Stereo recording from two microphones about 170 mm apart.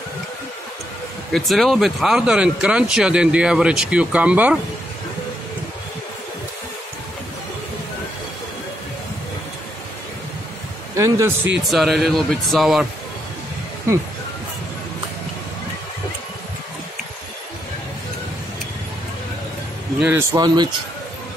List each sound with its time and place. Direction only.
1.3 s speech: centre (ahead or behind)
11.0 s speech: 20° right (ahead or behind)
11.7 s speech: centre (ahead or behind)
20.0 s speech: 10° right (ahead or behind)
20.3 s speech: 25° right (ahead or behind)